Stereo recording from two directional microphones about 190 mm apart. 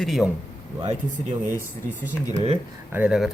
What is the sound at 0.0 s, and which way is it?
Speech, centre (ahead or behind).